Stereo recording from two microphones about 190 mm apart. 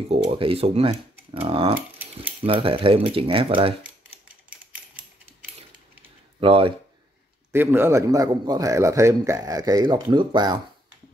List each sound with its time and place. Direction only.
0.1 s speech: 30° right (ahead or behind)
6.4 s speech: 30° right (ahead or behind)
7.5 s a man's voice: 10° right (ahead or behind)